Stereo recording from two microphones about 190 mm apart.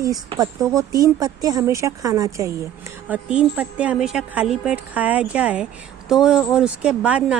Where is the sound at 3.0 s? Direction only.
5° right (ahead or behind).